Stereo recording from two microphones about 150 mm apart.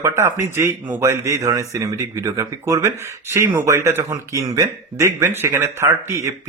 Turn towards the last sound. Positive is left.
turn(degrees=-20)  # may be behind; listen again after turning